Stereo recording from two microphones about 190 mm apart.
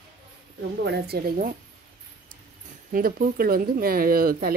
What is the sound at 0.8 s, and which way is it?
Speech, 60° right (ahead or behind).